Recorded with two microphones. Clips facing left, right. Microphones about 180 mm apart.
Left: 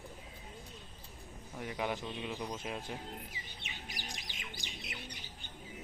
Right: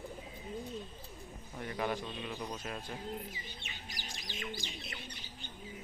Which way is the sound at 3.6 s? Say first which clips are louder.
Left 1 dB; 15° left (ahead or behind).